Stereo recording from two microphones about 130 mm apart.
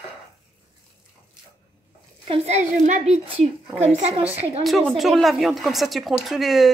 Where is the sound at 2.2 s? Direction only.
50° right (ahead or behind).